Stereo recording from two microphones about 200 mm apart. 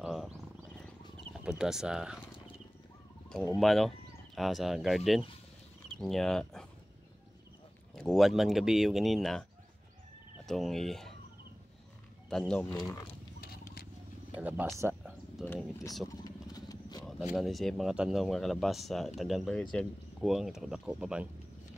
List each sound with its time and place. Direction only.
0.0 s wild animals: centre (ahead or behind)
1.3 s speech: 5° right (ahead or behind)
3.5 s speech: centre (ahead or behind)
7.9 s speech: centre (ahead or behind)
12.3 s speech: 5° left (ahead or behind)
12.7 s speech: 15° left (ahead or behind)
13.4 s a sound: 50° left (ahead or behind)
14.3 s speech: 5° right (ahead or behind)
15.4 s speech: 10° left (ahead or behind)
16.3 s vehicle: 20° left (ahead or behind)
17.0 s speech: centre (ahead or behind)